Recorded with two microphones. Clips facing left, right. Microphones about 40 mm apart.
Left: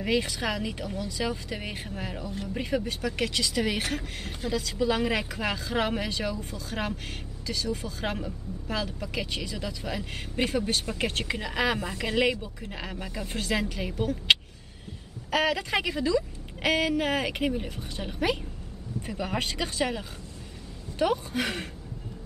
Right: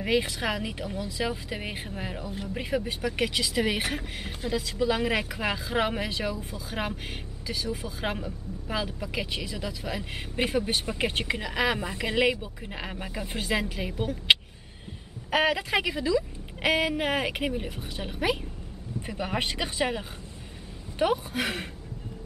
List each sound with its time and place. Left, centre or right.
0.0 s speech: centre